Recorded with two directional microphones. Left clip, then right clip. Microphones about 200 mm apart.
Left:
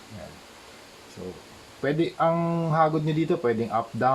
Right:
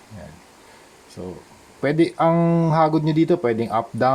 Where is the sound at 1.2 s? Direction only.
40° right (ahead or behind).